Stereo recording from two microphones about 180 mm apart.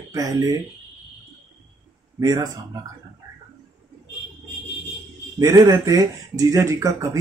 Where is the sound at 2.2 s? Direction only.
20° right (ahead or behind).